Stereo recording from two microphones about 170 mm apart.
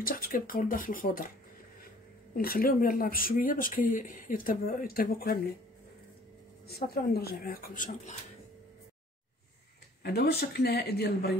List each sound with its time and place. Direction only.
0.0 s speech: 55° left (ahead or behind)
2.3 s speech: 60° left (ahead or behind)
6.7 s speech: 65° left (ahead or behind)
10.0 s speech: 70° left (ahead or behind)